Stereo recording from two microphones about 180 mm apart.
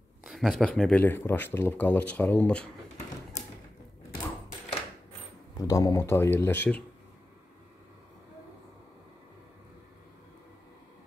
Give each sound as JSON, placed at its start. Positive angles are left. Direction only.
{"t": 0.2, "sound": "speech", "side_deg": 0}
{"t": 5.6, "sound": "speech", "side_deg": 20}